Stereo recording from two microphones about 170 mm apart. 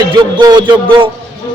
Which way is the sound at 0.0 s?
25° right (ahead or behind).